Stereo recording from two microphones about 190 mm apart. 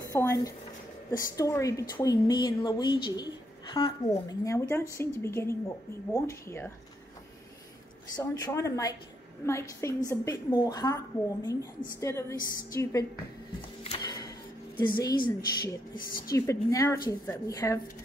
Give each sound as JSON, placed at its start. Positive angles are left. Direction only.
{"t": 0.1, "sound": "a woman's voice", "side_deg": 15}
{"t": 8.2, "sound": "a woman's voice", "side_deg": 15}
{"t": 13.8, "sound": "music", "side_deg": 25}
{"t": 14.8, "sound": "a woman's voice", "side_deg": 25}